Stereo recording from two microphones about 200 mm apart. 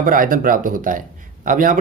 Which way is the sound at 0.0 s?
45° right (ahead or behind).